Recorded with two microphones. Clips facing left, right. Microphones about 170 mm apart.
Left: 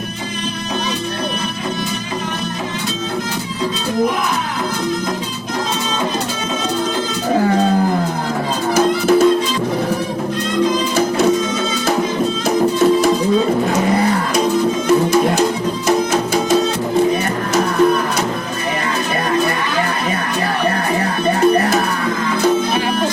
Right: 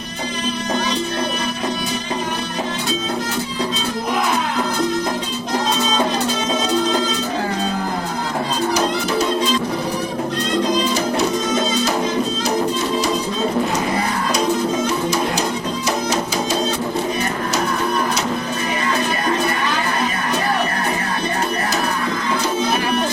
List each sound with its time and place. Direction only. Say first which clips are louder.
8.7 s music: left 10 dB; 50° left (ahead or behind)